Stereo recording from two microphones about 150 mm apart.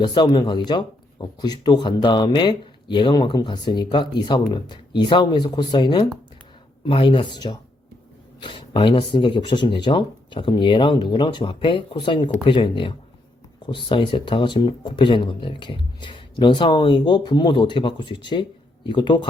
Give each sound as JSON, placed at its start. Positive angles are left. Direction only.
{"t": 0.0, "sound": "speech", "side_deg": 30}